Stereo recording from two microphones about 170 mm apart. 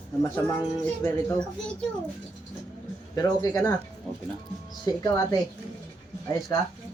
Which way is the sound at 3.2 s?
25° left (ahead or behind).